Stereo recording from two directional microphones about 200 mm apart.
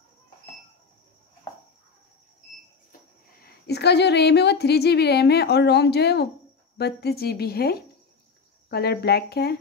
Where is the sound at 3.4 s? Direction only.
55° left (ahead or behind).